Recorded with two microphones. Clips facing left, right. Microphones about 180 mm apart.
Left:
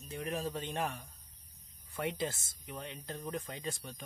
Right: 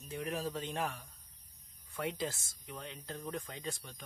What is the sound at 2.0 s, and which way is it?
Speech, centre (ahead or behind).